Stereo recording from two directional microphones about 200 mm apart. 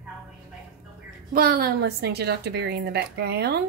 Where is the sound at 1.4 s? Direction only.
50° right (ahead or behind).